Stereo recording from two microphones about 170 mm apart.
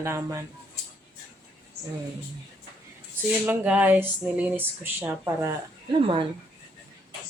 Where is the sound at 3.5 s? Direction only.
10° right (ahead or behind).